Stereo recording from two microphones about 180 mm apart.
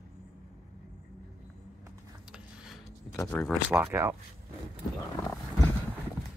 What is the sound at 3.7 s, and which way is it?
Speech, 15° right (ahead or behind).